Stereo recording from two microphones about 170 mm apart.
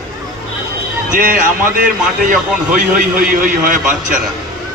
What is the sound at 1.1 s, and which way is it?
A man's voice, 55° right (ahead or behind).